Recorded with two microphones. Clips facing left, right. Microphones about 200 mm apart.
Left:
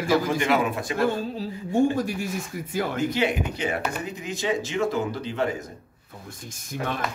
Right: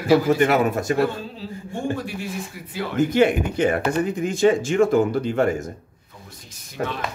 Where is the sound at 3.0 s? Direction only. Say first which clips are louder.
Right 9 dB; 50° right (ahead or behind).